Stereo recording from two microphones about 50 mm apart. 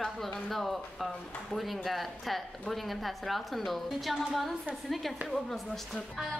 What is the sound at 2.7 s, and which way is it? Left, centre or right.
A woman's voice, centre.